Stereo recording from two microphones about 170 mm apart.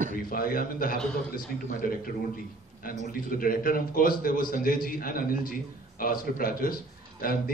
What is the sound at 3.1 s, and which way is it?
A man's voice, 55° left (ahead or behind).